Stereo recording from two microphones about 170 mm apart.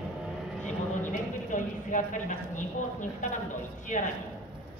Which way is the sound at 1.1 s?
50° left (ahead or behind).